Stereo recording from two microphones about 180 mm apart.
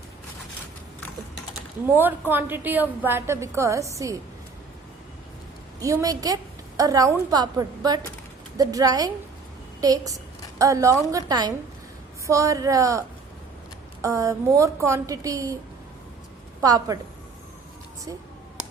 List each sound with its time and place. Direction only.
2.0 s a woman's voice: 10° right (ahead or behind)
5.8 s a woman's voice: 20° right (ahead or behind)
8.5 s a woman's voice: 20° right (ahead or behind)
16.6 s a woman's voice: 20° right (ahead or behind)